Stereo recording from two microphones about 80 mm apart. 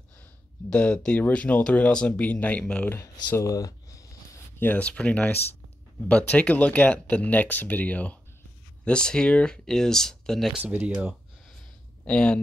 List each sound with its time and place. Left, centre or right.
0.7 s speech: centre
3.3 s a sound: left
4.6 s speech: centre
10.6 s speech: right
12.0 s speech: centre